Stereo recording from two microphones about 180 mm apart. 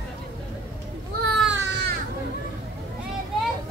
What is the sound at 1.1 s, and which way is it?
Baby cry, 75° right (ahead or behind).